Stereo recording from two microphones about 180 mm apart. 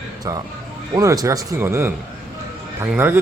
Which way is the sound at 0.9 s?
20° right (ahead or behind).